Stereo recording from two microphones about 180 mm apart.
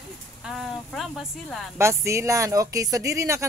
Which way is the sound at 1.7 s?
15° right (ahead or behind).